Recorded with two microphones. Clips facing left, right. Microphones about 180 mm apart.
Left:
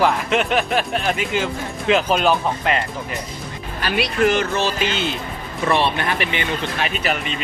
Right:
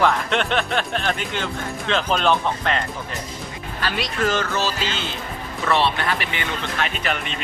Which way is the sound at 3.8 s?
15° left (ahead or behind).